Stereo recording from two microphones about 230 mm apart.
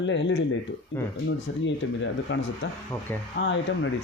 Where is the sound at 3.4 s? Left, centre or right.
Left.